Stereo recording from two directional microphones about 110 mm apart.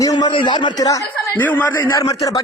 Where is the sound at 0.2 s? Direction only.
45° left (ahead or behind).